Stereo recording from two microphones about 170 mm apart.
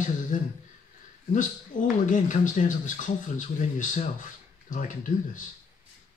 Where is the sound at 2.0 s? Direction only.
50° left (ahead or behind).